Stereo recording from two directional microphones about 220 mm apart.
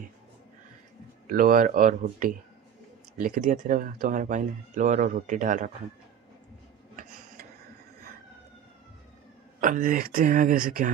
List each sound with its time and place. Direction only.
1.2 s speech: 40° right (ahead or behind)
9.6 s speech: 35° right (ahead or behind)